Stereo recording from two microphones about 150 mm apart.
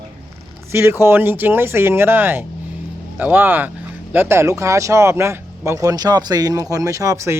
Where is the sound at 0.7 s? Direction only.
15° right (ahead or behind).